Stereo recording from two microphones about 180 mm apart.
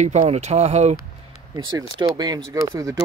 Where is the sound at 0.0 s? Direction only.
40° right (ahead or behind).